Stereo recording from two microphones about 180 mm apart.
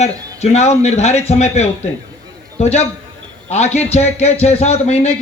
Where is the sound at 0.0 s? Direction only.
35° left (ahead or behind).